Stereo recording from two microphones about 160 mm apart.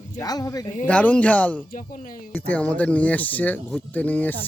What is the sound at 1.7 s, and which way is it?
Speech, 55° left (ahead or behind).